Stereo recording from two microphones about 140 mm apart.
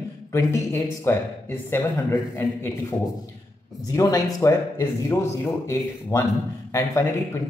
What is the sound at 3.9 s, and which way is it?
A man's voice, 25° left (ahead or behind).